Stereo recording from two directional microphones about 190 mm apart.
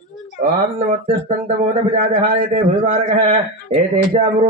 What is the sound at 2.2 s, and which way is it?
Speech, 50° right (ahead or behind).